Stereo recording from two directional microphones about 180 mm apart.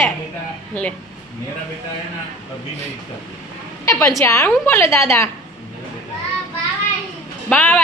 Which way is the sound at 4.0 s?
15° left (ahead or behind).